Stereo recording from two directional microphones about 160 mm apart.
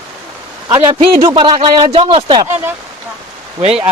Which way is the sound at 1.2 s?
25° right (ahead or behind).